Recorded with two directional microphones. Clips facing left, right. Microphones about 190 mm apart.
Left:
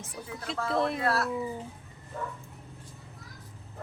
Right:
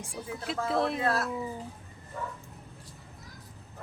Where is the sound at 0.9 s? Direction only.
25° right (ahead or behind).